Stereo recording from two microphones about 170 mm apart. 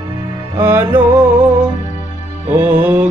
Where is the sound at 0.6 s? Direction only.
15° right (ahead or behind).